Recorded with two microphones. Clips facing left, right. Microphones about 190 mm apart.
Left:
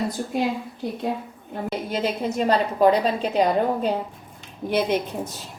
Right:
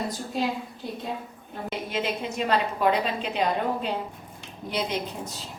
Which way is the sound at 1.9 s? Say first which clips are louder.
Left 4 dB; 40° left (ahead or behind).